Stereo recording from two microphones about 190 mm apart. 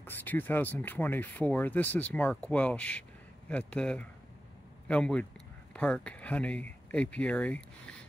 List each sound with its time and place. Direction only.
0.0 s speech: 10° left (ahead or behind)